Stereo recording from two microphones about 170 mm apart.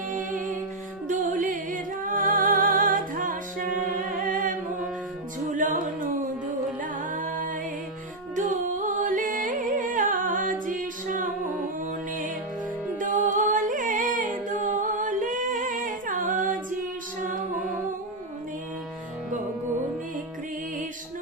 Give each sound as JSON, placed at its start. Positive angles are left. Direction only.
{"t": 0.1, "sound": "music", "side_deg": -50}
{"t": 5.5, "sound": "music", "side_deg": -50}
{"t": 7.1, "sound": "a capella", "side_deg": -50}
{"t": 8.4, "sound": "music", "side_deg": -50}
{"t": 14.4, "sound": "a capella", "side_deg": -50}